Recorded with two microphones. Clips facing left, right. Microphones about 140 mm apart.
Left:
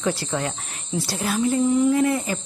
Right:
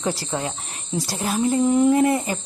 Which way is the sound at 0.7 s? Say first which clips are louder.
Even; 40° right (ahead or behind).